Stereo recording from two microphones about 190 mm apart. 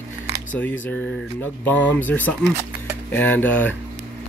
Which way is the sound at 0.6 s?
10° left (ahead or behind).